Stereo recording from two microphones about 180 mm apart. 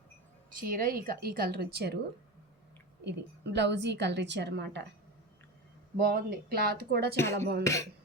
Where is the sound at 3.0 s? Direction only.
70° right (ahead or behind).